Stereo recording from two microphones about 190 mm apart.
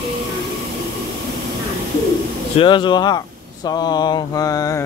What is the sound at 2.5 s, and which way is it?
Speech, 25° left (ahead or behind).